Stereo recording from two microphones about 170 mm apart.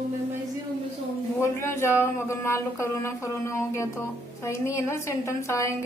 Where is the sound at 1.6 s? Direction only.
15° left (ahead or behind).